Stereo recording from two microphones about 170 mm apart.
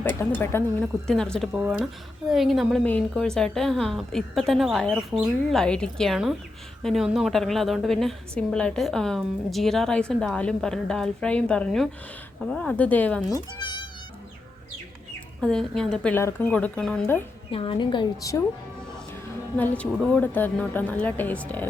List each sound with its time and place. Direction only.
0.0 s a woman's voice: 10° left (ahead or behind)
1.5 s a woman's voice: 10° right (ahead or behind); by 13.2 s 10° left (ahead or behind)
13.2 s speech: 25° left (ahead or behind)
15.4 s a woman's voice: 5° left (ahead or behind)
17.5 s a woman's voice: 30° left (ahead or behind)
19.5 s speech: 10° left (ahead or behind)